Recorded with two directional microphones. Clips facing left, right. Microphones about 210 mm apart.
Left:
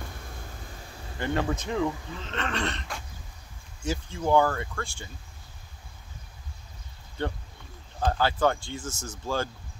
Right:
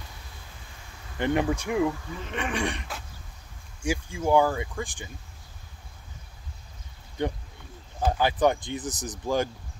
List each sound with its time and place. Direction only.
0.0 s a sound: 50° left (ahead or behind)
1.1 s speech: 20° right (ahead or behind)
7.2 s speech: 15° right (ahead or behind)